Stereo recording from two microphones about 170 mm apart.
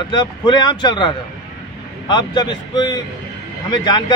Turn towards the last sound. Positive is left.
turn(degrees=25)  # may be behind; listen again after turning